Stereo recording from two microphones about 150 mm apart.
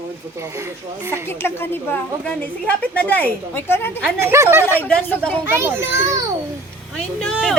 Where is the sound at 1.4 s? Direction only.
15° left (ahead or behind).